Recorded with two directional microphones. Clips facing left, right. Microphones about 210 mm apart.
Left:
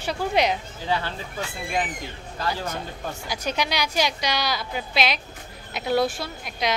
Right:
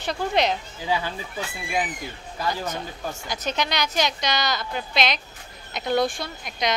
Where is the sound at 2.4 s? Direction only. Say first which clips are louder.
Right 1 dB; 10° right (ahead or behind).